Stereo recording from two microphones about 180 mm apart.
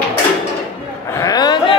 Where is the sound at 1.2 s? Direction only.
20° left (ahead or behind).